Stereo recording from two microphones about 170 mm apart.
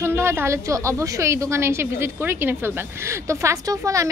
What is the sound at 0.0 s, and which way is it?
A woman's voice, 15° right (ahead or behind).